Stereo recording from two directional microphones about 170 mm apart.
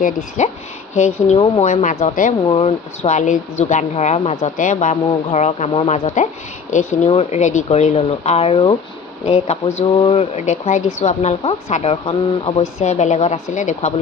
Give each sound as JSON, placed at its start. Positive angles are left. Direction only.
{"t": 0.0, "sound": "speech", "side_deg": 45}
{"t": 2.4, "sound": "speech", "side_deg": 30}